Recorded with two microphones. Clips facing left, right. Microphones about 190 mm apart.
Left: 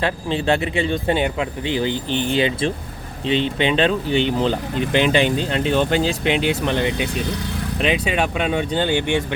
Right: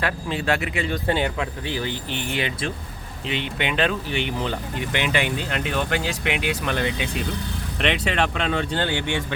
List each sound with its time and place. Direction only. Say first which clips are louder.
0.0 s speech: left 4 dB; 25° left (ahead or behind)
7.2 s speech: left 3 dB; 85° left
7.8 s speech: left 2 dB; 5° left (ahead or behind)